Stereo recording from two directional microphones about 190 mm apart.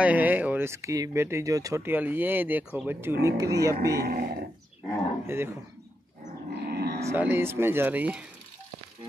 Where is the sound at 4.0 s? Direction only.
50° right (ahead or behind).